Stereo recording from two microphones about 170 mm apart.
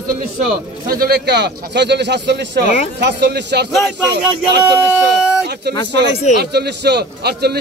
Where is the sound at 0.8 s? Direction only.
65° right (ahead or behind); by 3.6 s 80° right.